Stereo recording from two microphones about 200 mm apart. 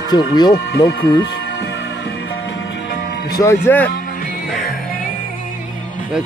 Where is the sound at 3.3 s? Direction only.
15° left (ahead or behind).